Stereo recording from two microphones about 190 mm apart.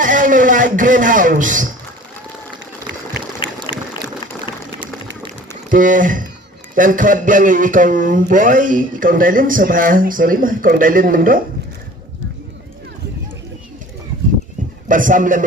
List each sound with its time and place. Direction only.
0.0 s a man's voice: 45° right (ahead or behind)
3.7 s a sound: 25° left (ahead or behind)
5.6 s a man's voice: 45° right (ahead or behind)
14.8 s a man's voice: 45° right (ahead or behind)